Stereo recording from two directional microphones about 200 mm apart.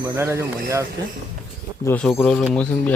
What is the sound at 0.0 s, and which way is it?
Speech, 15° right (ahead or behind).